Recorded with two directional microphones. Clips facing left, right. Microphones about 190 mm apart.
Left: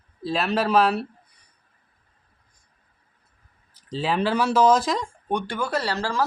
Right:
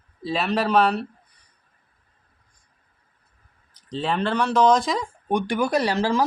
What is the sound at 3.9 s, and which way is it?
Speech, 5° left (ahead or behind).